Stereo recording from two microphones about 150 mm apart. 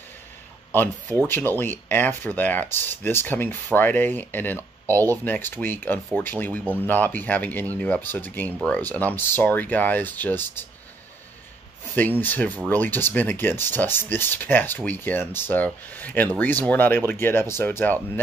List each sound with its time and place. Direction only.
1.2 s speech: 15° left (ahead or behind)
12.2 s speech: 10° left (ahead or behind)